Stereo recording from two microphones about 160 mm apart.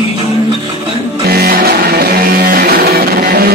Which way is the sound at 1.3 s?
75° right (ahead or behind).